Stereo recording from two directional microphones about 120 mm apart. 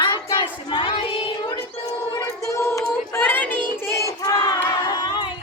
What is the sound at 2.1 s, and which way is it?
Choir, 25° left (ahead or behind).